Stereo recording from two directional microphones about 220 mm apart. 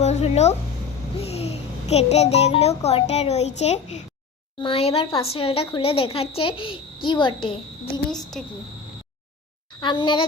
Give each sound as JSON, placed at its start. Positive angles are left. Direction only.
{"t": 0.0, "sound": "a sound", "side_deg": 30}
{"t": 1.1, "sound": "a child's voice", "side_deg": 25}
{"t": 8.1, "sound": "a woman's voice", "side_deg": 0}
{"t": 9.8, "sound": "a woman's voice", "side_deg": 20}